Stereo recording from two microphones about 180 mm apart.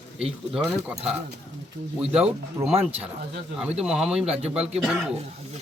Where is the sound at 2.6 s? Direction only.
20° right (ahead or behind).